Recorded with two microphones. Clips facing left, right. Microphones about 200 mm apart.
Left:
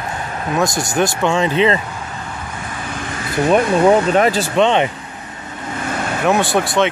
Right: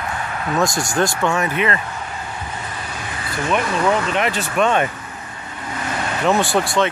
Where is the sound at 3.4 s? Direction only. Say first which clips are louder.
Left 7 dB; 40° left (ahead or behind); by 4.9 s 20° left (ahead or behind).